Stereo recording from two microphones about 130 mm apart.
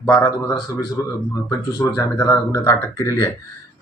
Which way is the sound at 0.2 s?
30° left (ahead or behind).